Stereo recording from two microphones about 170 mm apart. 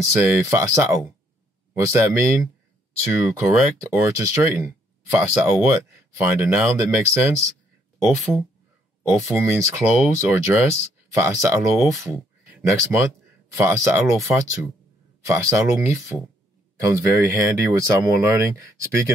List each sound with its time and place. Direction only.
0.2 s speech: 15° right (ahead or behind)
9.3 s speech: 15° right (ahead or behind)